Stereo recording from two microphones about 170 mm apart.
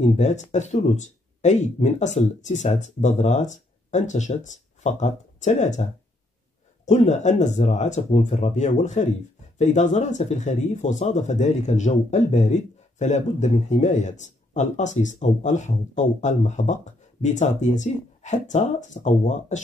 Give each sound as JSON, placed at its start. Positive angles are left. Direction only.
{"t": 0.0, "sound": "speech", "side_deg": 45}
{"t": 6.9, "sound": "speech", "side_deg": 45}